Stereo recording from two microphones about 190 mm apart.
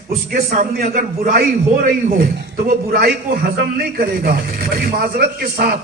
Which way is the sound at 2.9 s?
55° right (ahead or behind).